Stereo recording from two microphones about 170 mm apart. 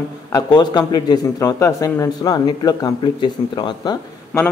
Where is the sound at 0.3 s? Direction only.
25° left (ahead or behind).